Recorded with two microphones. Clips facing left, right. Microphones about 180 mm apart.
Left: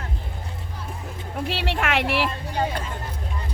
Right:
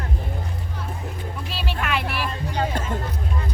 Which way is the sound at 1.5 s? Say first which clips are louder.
Left 2 dB; 85° left.